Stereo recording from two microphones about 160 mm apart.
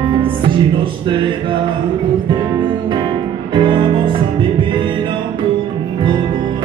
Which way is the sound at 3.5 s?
30° right (ahead or behind).